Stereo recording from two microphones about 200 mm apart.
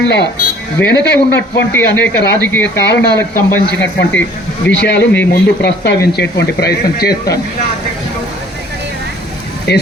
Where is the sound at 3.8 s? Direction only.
65° left (ahead or behind).